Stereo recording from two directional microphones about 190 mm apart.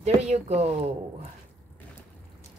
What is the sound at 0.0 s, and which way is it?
Speech, 35° right (ahead or behind).